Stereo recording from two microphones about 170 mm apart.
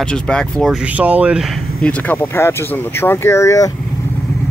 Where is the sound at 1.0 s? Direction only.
10° right (ahead or behind).